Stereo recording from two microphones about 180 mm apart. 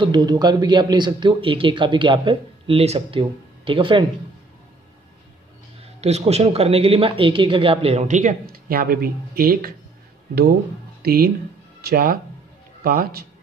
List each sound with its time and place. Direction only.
0.0 s speech: 25° right (ahead or behind)
5.9 s speech: 35° right (ahead or behind); by 9.8 s 55° right (ahead or behind)
11.0 s a man's voice: 60° right (ahead or behind)